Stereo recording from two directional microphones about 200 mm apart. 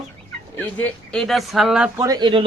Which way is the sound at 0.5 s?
10° left (ahead or behind).